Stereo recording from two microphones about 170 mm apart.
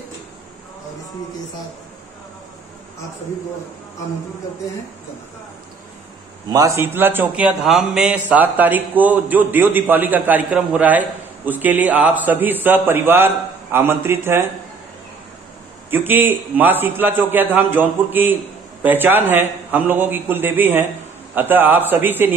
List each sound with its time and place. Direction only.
6.5 s a man's voice: 20° right (ahead or behind)
15.9 s a man's voice: 10° right (ahead or behind)